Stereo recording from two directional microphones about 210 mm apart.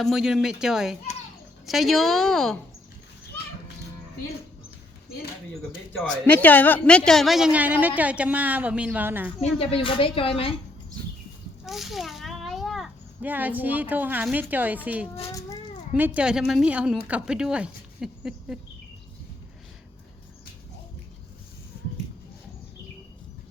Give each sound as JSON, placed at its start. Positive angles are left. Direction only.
{"t": 0.0, "sound": "a woman's voice", "side_deg": 0}
{"t": 6.2, "sound": "a woman's voice", "side_deg": 10}
{"t": 9.6, "sound": "a woman's voice", "side_deg": 25}
{"t": 11.6, "sound": "a child's voice", "side_deg": 0}
{"t": 15.3, "sound": "a child's voice", "side_deg": 15}
{"t": 16.0, "sound": "a woman's voice", "side_deg": -5}